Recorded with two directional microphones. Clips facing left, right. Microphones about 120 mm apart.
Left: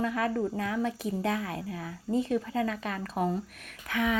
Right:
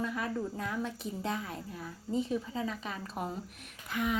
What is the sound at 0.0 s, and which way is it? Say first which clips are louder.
A woman's voice: left 6 dB; 80° left.